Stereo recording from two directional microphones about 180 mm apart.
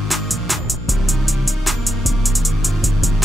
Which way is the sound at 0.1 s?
Centre (ahead or behind).